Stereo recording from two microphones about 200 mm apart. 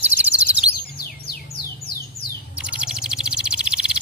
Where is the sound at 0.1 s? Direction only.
10° right (ahead or behind).